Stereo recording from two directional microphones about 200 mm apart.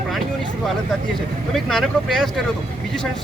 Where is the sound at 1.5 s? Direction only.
Centre (ahead or behind).